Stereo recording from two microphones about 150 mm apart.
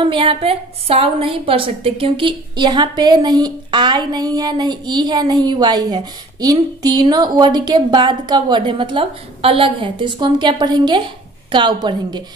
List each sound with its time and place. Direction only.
0.0 s a woman's voice: 35° right (ahead or behind)